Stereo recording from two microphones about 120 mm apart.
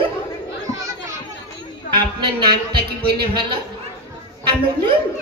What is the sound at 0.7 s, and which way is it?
Children playing, 25° right (ahead or behind).